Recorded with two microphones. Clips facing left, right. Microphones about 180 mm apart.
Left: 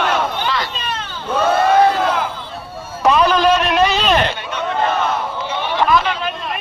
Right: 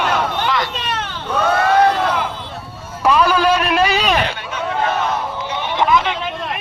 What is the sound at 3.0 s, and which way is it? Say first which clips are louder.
A man's voice: left 1 dB; 10° right (ahead or behind).